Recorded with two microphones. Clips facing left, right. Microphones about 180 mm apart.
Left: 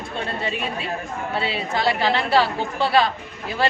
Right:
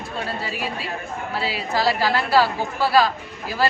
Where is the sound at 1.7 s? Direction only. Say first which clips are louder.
Right 1 dB; 25° left (ahead or behind).